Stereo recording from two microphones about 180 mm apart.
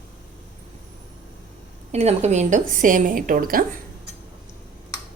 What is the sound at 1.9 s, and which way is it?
Speech, 35° right (ahead or behind).